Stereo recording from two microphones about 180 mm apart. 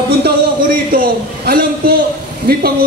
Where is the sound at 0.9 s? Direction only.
55° right (ahead or behind).